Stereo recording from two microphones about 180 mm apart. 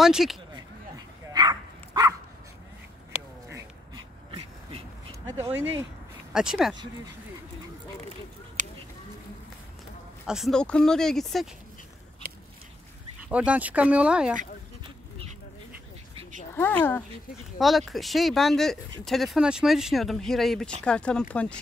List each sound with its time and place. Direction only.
0.0 s speech: centre (ahead or behind)
0.9 s bow-wow: 20° right (ahead or behind)
3.5 s dog: 25° right (ahead or behind)
5.4 s speech: 10° right (ahead or behind)
8.6 s a sound: 45° right (ahead or behind)
10.2 s speech: centre (ahead or behind)
13.3 s speech: 5° right (ahead or behind)
16.5 s speech: 10° left (ahead or behind)
17.6 s speech: centre (ahead or behind)